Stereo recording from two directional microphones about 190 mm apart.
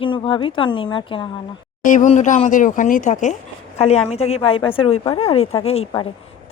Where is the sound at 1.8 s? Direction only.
40° left (ahead or behind).